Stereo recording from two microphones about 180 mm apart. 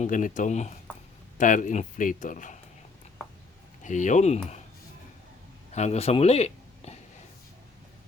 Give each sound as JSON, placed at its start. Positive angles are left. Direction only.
{"t": 0.0, "sound": "speech", "side_deg": 45}
{"t": 3.8, "sound": "speech", "side_deg": 45}
{"t": 5.7, "sound": "speech", "side_deg": 35}